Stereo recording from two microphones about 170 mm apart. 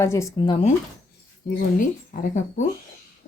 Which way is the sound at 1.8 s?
45° left (ahead or behind).